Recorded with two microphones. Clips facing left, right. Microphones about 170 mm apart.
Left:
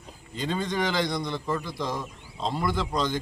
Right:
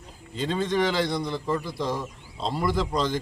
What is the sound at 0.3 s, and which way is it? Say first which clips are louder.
Speech: right 2 dB; centre (ahead or behind).